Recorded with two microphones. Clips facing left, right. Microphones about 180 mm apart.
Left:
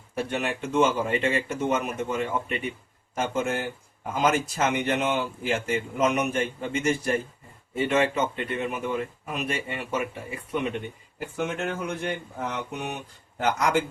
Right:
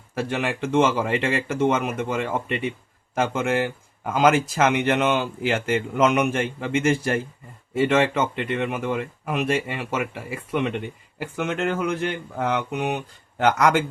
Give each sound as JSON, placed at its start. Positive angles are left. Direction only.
{"t": 0.2, "sound": "speech", "side_deg": -90}